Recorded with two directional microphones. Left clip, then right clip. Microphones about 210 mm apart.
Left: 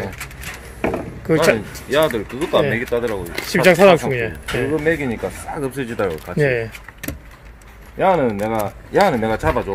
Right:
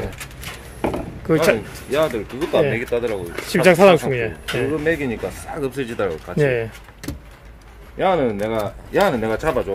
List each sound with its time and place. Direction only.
0.7 s chop: centre (ahead or behind)
2.0 s speech: 40° left (ahead or behind)
3.4 s speech: centre (ahead or behind)
4.8 s speech: 40° left (ahead or behind)
6.4 s speech: centre (ahead or behind)
8.0 s speech: 40° left (ahead or behind)